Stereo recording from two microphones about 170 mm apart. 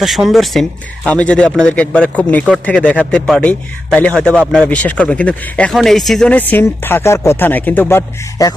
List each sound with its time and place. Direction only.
0.0 s speech: centre (ahead or behind); by 8.5 s 15° left (ahead or behind)